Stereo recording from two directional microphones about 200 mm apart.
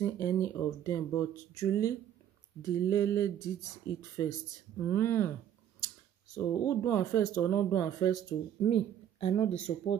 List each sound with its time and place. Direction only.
0.0 s speech: 15° left (ahead or behind)
6.3 s speech: 15° left (ahead or behind)